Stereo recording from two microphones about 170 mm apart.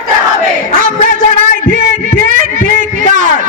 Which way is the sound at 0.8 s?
55° right (ahead or behind).